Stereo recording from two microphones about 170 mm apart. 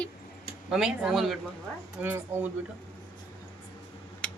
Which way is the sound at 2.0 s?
15° right (ahead or behind).